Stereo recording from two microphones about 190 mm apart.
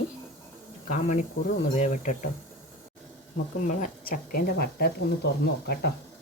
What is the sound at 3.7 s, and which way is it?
Speech, 45° left (ahead or behind).